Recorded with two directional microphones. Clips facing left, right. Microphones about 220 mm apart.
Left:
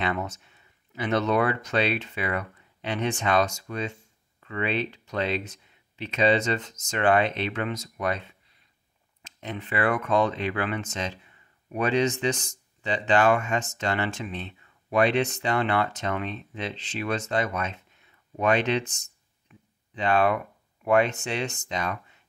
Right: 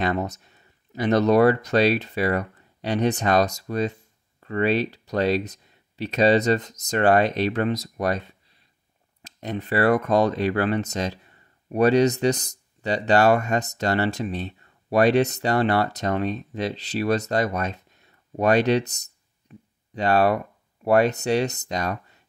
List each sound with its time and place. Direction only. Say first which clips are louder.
0.0 s speech: right 4 dB; 40° right (ahead or behind)
19.5 s a sound: right 9 dB; 35° right (ahead or behind)
19.9 s speech: right 3 dB; 40° right (ahead or behind)